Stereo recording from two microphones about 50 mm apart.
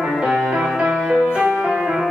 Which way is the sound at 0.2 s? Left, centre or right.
Centre.